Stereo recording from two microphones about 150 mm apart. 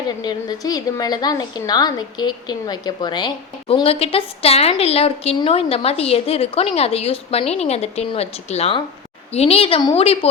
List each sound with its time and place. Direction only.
0.2 s a woman's voice: 25° left (ahead or behind)